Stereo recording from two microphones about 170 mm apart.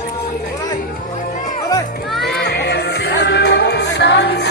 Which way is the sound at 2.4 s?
70° left (ahead or behind).